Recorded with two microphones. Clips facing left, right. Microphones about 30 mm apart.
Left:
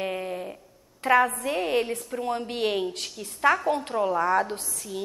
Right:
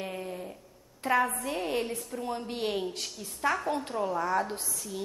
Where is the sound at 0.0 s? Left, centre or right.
Left.